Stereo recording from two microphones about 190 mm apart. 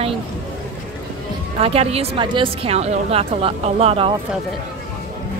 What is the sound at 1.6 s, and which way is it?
A woman's voice, 30° right (ahead or behind).